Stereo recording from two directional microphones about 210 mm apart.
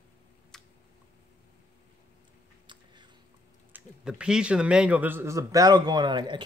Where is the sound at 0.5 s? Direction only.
Centre (ahead or behind).